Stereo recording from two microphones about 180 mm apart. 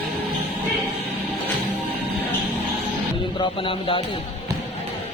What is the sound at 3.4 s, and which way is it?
Music, 30° left (ahead or behind).